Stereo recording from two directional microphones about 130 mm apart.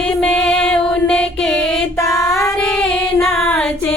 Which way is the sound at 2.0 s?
25° left (ahead or behind).